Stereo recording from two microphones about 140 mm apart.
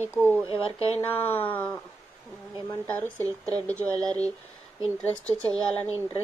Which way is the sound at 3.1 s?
20° right (ahead or behind).